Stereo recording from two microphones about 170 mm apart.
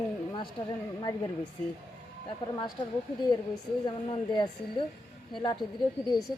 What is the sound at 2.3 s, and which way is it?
Speech, 25° left (ahead or behind).